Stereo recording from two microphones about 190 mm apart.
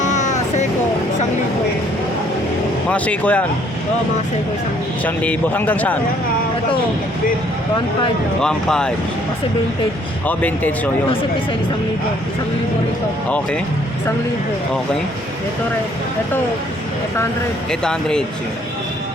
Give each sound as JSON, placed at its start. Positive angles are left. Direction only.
{"t": 0.0, "sound": "vehicle", "side_deg": 40}
{"t": 2.9, "sound": "speech", "side_deg": 5}
{"t": 5.0, "sound": "speech", "side_deg": 10}
{"t": 8.4, "sound": "speech", "side_deg": 5}
{"t": 10.2, "sound": "speech", "side_deg": 10}
{"t": 17.7, "sound": "speech", "side_deg": 5}